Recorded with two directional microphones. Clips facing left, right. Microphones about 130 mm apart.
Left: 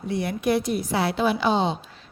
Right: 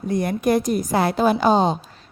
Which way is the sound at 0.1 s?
45° right (ahead or behind).